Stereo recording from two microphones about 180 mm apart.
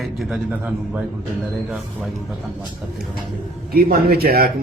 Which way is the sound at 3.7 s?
60° right (ahead or behind).